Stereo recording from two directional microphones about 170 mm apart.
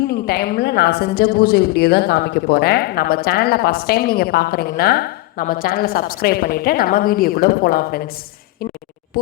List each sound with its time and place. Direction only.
0.1 s a woman's voice: 70° left (ahead or behind)